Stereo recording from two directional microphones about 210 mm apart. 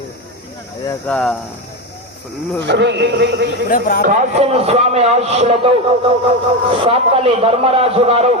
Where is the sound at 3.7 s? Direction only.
45° left (ahead or behind).